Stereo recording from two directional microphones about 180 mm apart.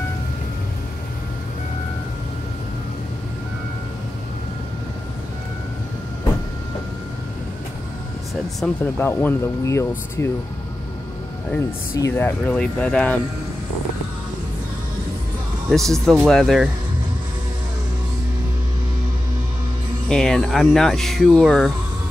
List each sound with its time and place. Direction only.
8.6 s speech: 5° left (ahead or behind)
12.0 s speech: 10° left (ahead or behind)
15.7 s speech: centre (ahead or behind)
20.1 s speech: 5° left (ahead or behind)